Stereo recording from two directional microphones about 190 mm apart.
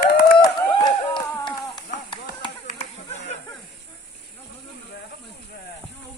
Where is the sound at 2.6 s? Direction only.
35° left (ahead or behind).